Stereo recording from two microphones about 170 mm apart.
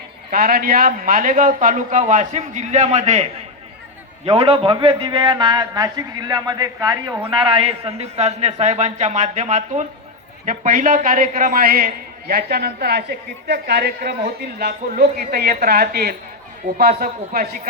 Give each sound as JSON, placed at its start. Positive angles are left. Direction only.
{"t": 0.3, "sound": "a man's voice", "side_deg": -60}
{"t": 4.3, "sound": "a man's voice", "side_deg": -35}